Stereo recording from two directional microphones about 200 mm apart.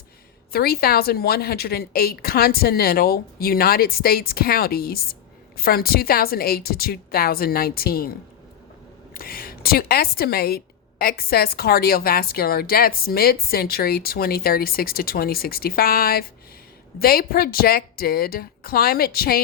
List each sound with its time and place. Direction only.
0.5 s a woman's voice: 50° left (ahead or behind)
9.1 s a woman's voice: 45° left (ahead or behind)